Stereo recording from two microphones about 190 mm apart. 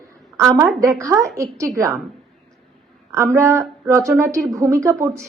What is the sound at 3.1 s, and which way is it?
Speech, 15° right (ahead or behind).